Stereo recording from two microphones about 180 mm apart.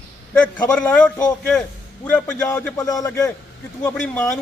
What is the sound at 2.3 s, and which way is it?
Speech, 20° left (ahead or behind).